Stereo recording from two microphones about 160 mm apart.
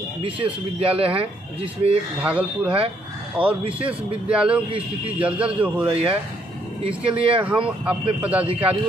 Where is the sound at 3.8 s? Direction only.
5° right (ahead or behind).